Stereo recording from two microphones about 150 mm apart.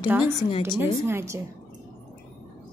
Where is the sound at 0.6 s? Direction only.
15° right (ahead or behind).